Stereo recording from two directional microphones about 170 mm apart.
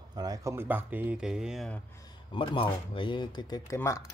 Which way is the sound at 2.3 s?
30° left (ahead or behind).